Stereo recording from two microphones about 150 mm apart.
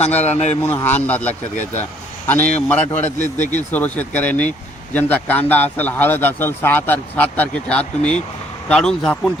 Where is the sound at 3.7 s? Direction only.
10° left (ahead or behind).